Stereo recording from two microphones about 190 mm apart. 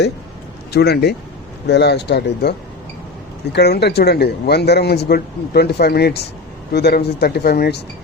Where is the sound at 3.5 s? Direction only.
60° left (ahead or behind).